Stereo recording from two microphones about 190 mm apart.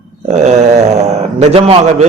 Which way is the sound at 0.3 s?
35° right (ahead or behind).